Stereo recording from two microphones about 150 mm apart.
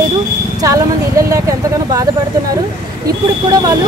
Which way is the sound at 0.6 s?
20° right (ahead or behind).